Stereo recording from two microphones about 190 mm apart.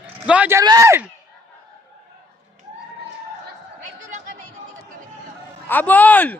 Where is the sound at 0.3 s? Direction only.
10° right (ahead or behind).